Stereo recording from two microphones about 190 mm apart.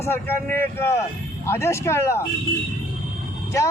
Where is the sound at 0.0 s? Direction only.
10° left (ahead or behind).